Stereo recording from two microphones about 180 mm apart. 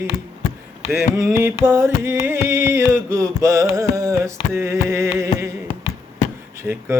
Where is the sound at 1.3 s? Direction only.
15° right (ahead or behind).